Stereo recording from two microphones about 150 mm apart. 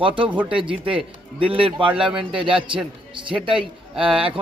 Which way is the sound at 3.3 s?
5° right (ahead or behind).